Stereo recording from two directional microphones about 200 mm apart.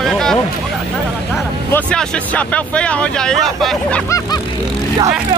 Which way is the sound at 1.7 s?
5° left (ahead or behind).